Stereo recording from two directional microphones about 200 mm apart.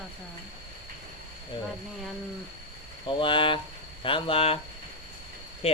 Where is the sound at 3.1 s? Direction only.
25° left (ahead or behind).